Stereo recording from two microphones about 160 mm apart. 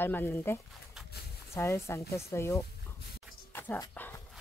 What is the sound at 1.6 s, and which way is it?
Speech, 15° left (ahead or behind).